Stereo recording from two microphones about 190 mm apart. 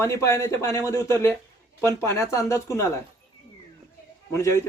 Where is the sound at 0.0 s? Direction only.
15° left (ahead or behind).